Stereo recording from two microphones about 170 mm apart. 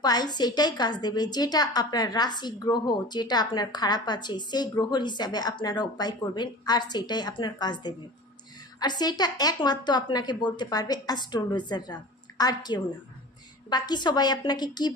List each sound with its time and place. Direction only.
0.0 s a woman's voice: 25° left (ahead or behind)